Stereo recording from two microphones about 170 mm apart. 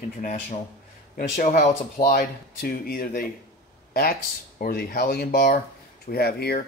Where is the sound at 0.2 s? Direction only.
45° left (ahead or behind).